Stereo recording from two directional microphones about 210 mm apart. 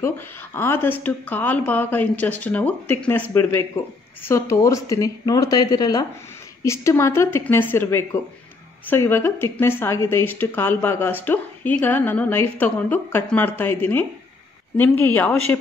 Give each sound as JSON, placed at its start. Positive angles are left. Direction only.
{"t": 0.0, "sound": "speech", "side_deg": 10}